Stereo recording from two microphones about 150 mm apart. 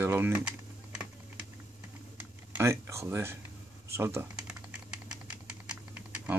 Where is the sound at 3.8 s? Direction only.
15° right (ahead or behind).